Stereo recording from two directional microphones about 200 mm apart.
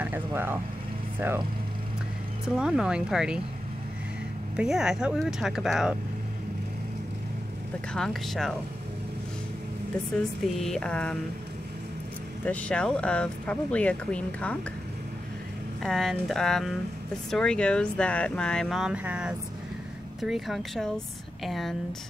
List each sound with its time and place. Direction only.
0.0 s speech: 10° right (ahead or behind)
2.4 s speech: 5° right (ahead or behind)
4.6 s speech: 5° right (ahead or behind)
7.9 s speech: centre (ahead or behind)
10.4 s speech: centre (ahead or behind)
12.4 s speech: 5° left (ahead or behind)
15.8 s speech: centre (ahead or behind)